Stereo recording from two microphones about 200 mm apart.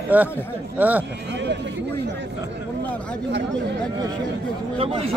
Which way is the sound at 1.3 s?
60° right (ahead or behind).